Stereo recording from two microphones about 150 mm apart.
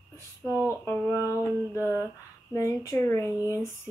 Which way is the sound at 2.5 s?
20° left (ahead or behind).